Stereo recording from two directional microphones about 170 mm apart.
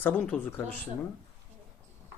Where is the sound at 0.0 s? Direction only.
10° left (ahead or behind).